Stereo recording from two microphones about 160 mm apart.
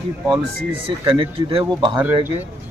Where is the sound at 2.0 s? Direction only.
15° right (ahead or behind).